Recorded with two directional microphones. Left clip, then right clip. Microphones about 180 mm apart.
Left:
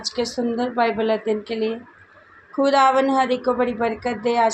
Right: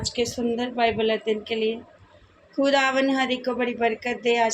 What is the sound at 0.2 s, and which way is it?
A woman's voice, 25° left (ahead or behind).